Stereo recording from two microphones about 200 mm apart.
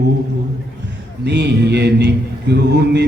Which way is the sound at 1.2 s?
55° right (ahead or behind).